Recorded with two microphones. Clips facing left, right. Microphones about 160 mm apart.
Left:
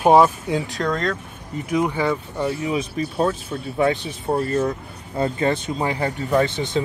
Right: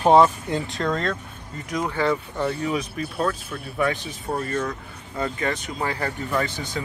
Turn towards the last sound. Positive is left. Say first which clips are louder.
# left 7 dB
turn(degrees=25)  # may be behind; listen again after turning